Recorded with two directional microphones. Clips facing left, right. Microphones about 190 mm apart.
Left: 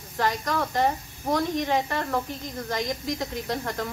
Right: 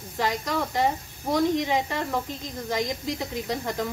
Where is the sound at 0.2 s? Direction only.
15° right (ahead or behind).